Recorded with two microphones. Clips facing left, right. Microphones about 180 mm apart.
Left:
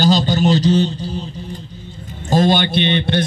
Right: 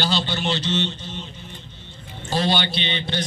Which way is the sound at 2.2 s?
45° left (ahead or behind).